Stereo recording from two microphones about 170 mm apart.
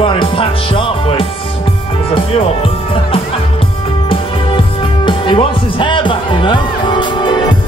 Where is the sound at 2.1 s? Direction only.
35° left (ahead or behind).